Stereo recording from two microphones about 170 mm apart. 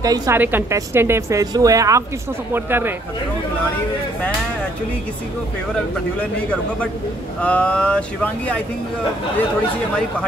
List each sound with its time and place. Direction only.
0.0 s a woman's voice: 15° right (ahead or behind)
7.4 s speech: 5° left (ahead or behind)